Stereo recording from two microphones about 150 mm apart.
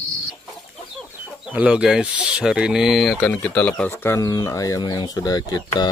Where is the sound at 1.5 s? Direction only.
10° right (ahead or behind).